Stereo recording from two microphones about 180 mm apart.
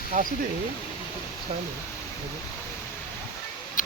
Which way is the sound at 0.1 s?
45° right (ahead or behind).